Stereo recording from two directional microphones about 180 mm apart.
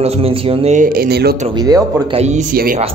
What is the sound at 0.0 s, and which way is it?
Speech, 30° right (ahead or behind).